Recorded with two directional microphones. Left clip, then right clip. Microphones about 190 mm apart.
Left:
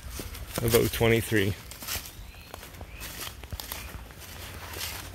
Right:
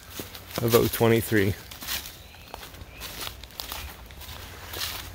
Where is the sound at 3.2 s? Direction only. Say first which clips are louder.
Right 3 dB; 50° left (ahead or behind).